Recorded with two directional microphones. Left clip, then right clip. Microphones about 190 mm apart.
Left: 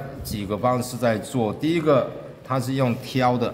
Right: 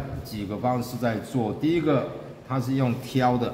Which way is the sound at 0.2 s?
35° left (ahead or behind).